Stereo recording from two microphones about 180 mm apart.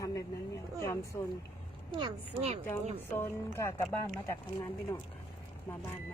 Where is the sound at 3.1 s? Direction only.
15° left (ahead or behind).